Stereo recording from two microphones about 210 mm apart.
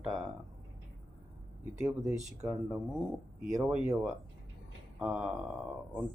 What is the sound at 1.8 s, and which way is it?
Speech, 10° right (ahead or behind).